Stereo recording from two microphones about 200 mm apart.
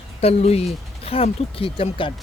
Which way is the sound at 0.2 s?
30° left (ahead or behind).